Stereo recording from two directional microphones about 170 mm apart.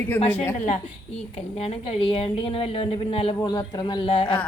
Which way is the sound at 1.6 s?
35° left (ahead or behind).